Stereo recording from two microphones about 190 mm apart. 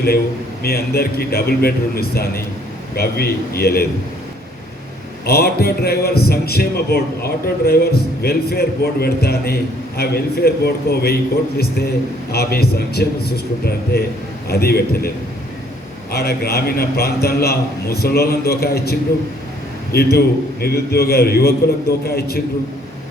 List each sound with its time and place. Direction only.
0.6 s a man's voice: 55° left (ahead or behind)
5.2 s a man's voice: 55° left (ahead or behind)
16.1 s a man's voice: 55° left (ahead or behind)